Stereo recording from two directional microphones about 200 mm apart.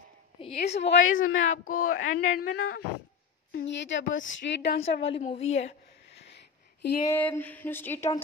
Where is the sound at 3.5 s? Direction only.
65° left (ahead or behind).